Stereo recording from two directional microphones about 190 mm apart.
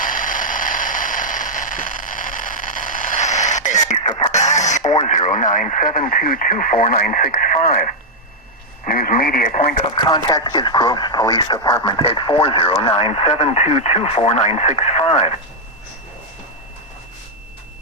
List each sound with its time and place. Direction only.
0.0 s a sound: 45° left (ahead or behind)
4.3 s radio: 40° left (ahead or behind)
5.0 s speech: 40° left (ahead or behind)
8.9 s speech: 50° left (ahead or behind)
9.9 s speech: 25° left (ahead or behind)